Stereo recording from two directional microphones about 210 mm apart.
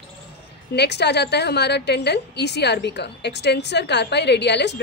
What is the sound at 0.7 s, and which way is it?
A woman's voice, 55° left (ahead or behind).